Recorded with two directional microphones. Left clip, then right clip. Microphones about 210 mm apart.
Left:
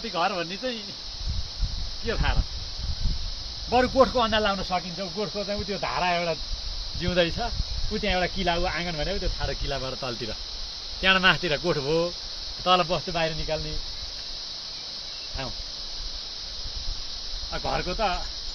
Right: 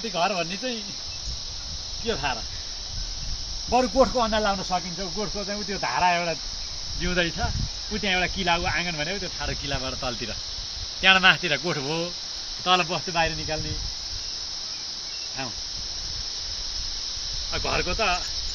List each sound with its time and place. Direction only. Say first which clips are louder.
0.1 s cricket: right 1 dB; 40° right (ahead or behind)
3.7 s speech: even; centre (ahead or behind)
4.3 s speech: even; 15° left (ahead or behind)
5.2 s speech: left 2 dB; 45° left (ahead or behind)
17.5 s speech: right 2 dB; 45° left (ahead or behind)